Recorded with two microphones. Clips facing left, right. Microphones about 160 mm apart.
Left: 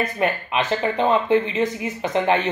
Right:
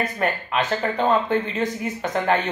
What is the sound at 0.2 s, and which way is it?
Speech, 15° left (ahead or behind).